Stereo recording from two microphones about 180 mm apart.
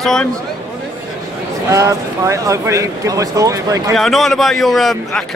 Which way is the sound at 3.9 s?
Centre (ahead or behind).